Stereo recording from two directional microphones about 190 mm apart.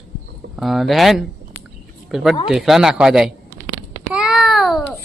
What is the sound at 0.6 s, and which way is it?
Speech, centre (ahead or behind).